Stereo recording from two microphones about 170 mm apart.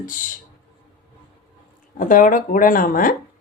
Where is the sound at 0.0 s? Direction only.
50° left (ahead or behind).